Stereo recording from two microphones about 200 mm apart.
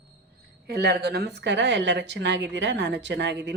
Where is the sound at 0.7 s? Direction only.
55° right (ahead or behind).